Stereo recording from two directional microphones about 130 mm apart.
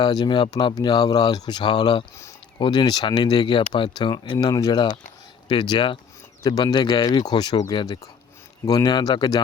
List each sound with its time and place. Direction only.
0.0 s speech: 30° left (ahead or behind)